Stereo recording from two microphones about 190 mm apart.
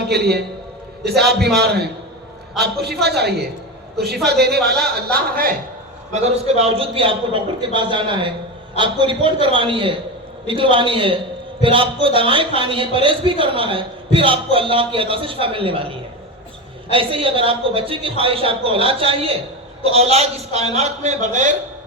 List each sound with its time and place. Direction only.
0.1 s a man's voice: 60° right (ahead or behind)
6.1 s a man's voice: 35° right (ahead or behind)
16.9 s a man's voice: 30° right (ahead or behind)